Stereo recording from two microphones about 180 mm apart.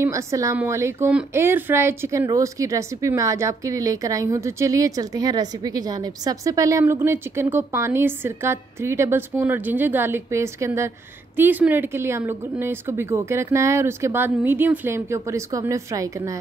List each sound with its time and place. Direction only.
0.0 s a woman's voice: 15° right (ahead or behind)